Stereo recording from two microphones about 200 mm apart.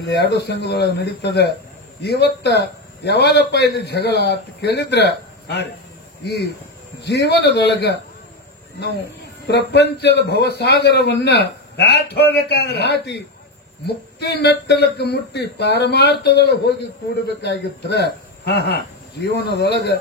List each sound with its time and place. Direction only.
0.0 s speech: 55° left (ahead or behind)
9.5 s speech: 55° left (ahead or behind)